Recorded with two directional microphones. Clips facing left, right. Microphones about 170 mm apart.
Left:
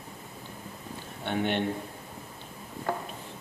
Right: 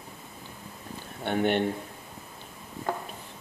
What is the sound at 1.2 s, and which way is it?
Speech, 45° right (ahead or behind).